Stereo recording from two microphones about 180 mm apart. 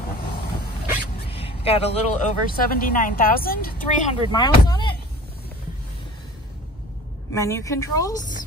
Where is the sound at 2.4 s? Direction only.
50° left (ahead or behind).